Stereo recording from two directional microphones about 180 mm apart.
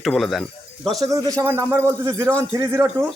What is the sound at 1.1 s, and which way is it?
Speech, 20° right (ahead or behind).